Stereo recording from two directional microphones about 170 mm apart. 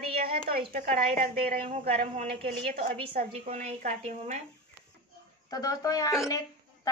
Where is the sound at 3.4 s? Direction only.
40° right (ahead or behind).